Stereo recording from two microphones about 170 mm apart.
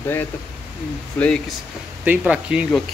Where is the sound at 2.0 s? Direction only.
10° right (ahead or behind).